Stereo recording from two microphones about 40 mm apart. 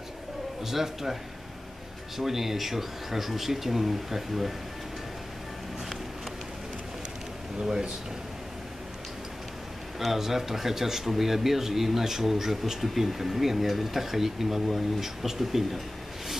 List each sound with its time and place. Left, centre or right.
0.7 s speech: centre
2.1 s speech: centre
7.6 s speech: centre
9.9 s speech: centre